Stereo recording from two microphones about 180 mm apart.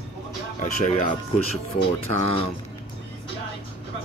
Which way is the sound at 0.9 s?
45° left (ahead or behind).